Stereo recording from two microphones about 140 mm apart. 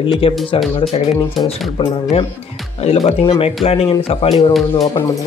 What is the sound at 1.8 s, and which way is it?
Speech, 45° left (ahead or behind).